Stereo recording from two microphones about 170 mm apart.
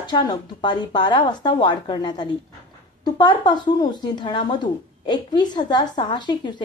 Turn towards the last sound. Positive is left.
turn(degrees=25)  # may be behind; listen again after turning